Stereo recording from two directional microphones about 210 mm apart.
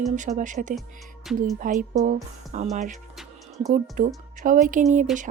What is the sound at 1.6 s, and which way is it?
Speech, 35° right (ahead or behind).